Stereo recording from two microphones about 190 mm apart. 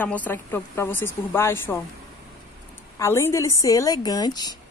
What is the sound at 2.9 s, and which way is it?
A woman's voice, 15° left (ahead or behind).